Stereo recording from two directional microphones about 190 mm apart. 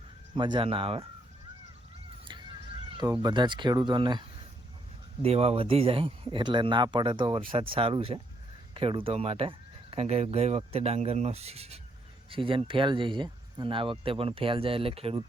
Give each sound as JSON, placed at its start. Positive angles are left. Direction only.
{"t": 0.3, "sound": "speech", "side_deg": -25}
{"t": 3.0, "sound": "speech", "side_deg": -20}
{"t": 5.2, "sound": "speech", "side_deg": -30}